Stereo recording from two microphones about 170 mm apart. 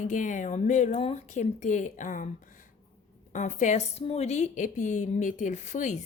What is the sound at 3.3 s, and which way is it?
A woman's voice, 45° left (ahead or behind).